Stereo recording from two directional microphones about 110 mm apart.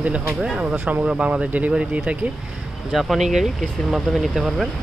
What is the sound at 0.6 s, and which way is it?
Speech, 10° right (ahead or behind).